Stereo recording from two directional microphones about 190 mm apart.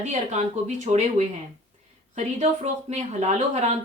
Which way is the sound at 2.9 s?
35° right (ahead or behind).